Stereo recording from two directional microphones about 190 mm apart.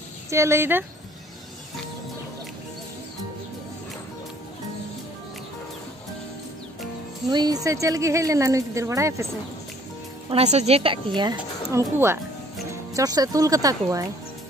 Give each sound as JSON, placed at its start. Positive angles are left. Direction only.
{"t": 0.3, "sound": "speech", "side_deg": -15}
{"t": 7.2, "sound": "speech", "side_deg": -20}
{"t": 10.3, "sound": "a woman's voice", "side_deg": -35}
{"t": 11.3, "sound": "a woman's voice", "side_deg": -15}